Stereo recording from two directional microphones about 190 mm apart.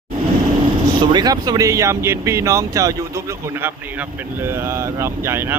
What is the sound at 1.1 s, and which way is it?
Speech, 20° right (ahead or behind).